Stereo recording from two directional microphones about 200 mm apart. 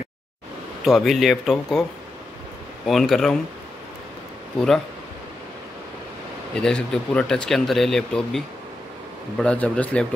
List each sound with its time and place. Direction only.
0.8 s speech: centre (ahead or behind)
2.9 s speech: centre (ahead or behind)
4.6 s speech: 5° left (ahead or behind)
6.5 s speech: 5° left (ahead or behind)